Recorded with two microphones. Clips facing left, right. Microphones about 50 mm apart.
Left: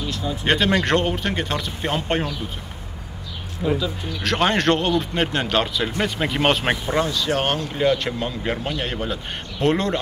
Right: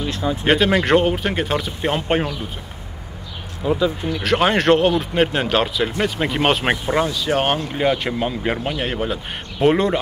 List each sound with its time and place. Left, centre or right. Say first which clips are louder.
0.0 s a sound: right 4 dB; right
0.5 s a man's voice: right 3 dB; centre
3.6 s speech: right 1 dB; right
4.2 s a man's voice: right 2 dB; centre